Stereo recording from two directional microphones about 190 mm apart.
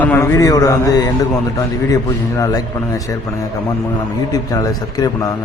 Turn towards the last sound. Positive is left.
turn(degrees=20)  # may be behind; listen again after turning